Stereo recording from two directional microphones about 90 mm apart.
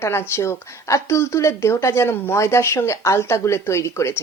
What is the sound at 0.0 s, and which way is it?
Speech, 30° left (ahead or behind).